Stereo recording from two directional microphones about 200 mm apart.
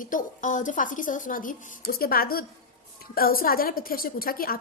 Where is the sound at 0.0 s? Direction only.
40° left (ahead or behind).